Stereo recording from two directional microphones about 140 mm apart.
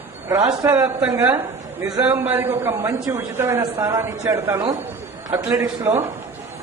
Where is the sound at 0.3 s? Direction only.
25° right (ahead or behind).